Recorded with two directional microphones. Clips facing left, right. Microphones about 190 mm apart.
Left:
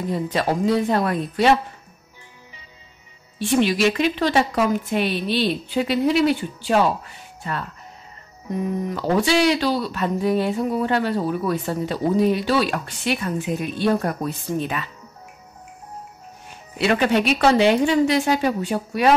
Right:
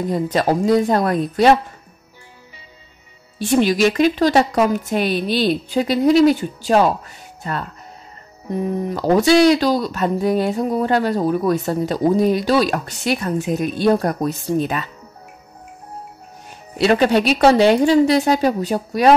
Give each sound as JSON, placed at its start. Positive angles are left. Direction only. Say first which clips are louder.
{"t": 0.1, "sound": "speech", "louder": "right 4 dB", "side_deg": -40}
{"t": 3.3, "sound": "speech", "louder": "right 3 dB", "side_deg": -40}
{"t": 8.8, "sound": "speech", "louder": "right 6 dB", "side_deg": -40}
{"t": 16.7, "sound": "speech", "louder": "right 4 dB", "side_deg": -35}